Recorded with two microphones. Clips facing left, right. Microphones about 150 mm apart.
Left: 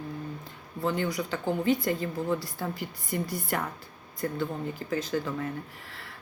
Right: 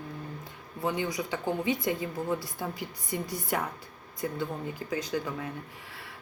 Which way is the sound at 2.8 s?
50° left (ahead or behind).